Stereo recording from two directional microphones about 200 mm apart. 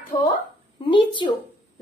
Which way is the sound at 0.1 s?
20° left (ahead or behind).